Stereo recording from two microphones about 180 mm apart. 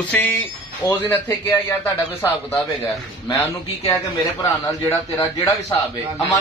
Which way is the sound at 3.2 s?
15° left (ahead or behind).